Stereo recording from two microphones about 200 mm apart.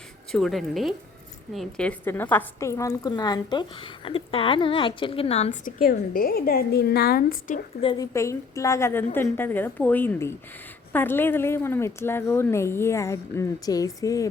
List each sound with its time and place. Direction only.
0.3 s a woman's voice: centre (ahead or behind); by 7.6 s 45° left (ahead or behind)
7.8 s a woman's voice: 25° left (ahead or behind)
8.1 s a woman's voice: 15° left (ahead or behind)